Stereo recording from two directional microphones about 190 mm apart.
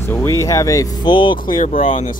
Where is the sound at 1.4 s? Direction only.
45° left (ahead or behind).